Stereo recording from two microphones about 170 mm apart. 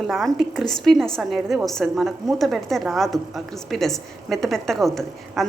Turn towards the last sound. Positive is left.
turn(degrees=0)  # may be behind; listen again after turning